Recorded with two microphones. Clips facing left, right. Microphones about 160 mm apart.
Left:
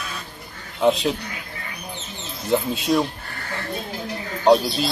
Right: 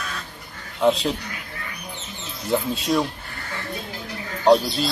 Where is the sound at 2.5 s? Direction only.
5° left (ahead or behind).